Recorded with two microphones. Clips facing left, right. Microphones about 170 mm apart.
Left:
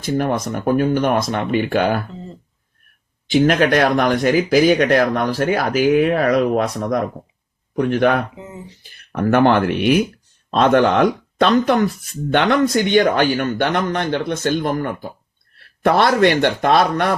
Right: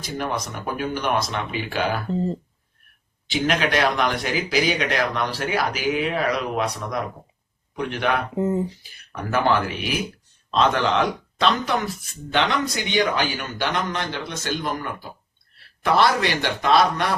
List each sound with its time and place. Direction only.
0.0 s speech: 50° left (ahead or behind)
2.0 s speech: 35° right (ahead or behind)
3.2 s speech: 45° left (ahead or behind)
8.4 s speech: 45° right (ahead or behind)
8.8 s speech: 55° left (ahead or behind)